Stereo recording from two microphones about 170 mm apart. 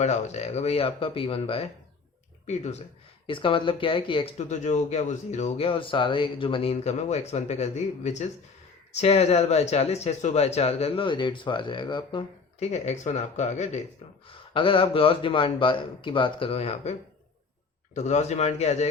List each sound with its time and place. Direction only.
0.0 s speech: 40° left (ahead or behind)
3.2 s speech: 30° left (ahead or behind)
12.5 s speech: 40° left (ahead or behind)
14.3 s speech: 30° left (ahead or behind)
17.9 s speech: 40° left (ahead or behind)